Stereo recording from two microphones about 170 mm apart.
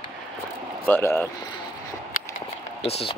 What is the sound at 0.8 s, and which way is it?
Speech, 10° left (ahead or behind).